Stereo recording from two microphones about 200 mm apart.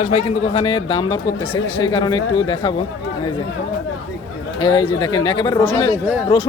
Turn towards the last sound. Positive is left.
turn(degrees=25)  # may be behind; listen again after turning